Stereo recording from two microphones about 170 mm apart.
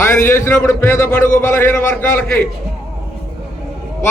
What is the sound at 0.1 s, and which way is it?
Speech, 15° left (ahead or behind).